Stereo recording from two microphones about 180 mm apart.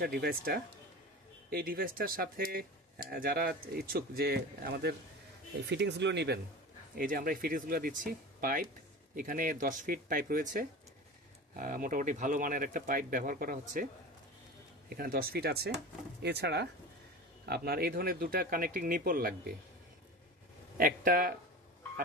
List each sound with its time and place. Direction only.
0.0 s speech: 55° right (ahead or behind)
5.6 s speech: 70° right (ahead or behind)
7.0 s speech: 55° right (ahead or behind)
14.9 s speech: 55° right (ahead or behind)
20.7 s speech: 55° right (ahead or behind)